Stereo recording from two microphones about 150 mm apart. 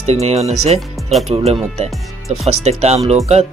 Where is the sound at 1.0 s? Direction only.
Centre (ahead or behind).